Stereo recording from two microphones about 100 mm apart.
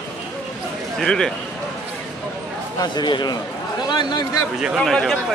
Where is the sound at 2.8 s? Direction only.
45° left (ahead or behind).